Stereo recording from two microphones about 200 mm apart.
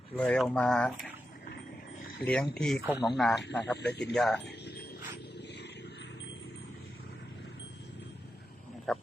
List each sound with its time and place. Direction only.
0.2 s speech: 5° left (ahead or behind)
2.2 s speech: 5° left (ahead or behind)
3.4 s a man's voice: 60° left (ahead or behind)
4.1 s speech: centre (ahead or behind)
4.4 s a sound: 55° left (ahead or behind)
8.9 s frog: centre (ahead or behind)